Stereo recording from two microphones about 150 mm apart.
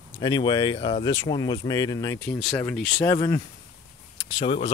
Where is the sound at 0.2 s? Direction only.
30° left (ahead or behind).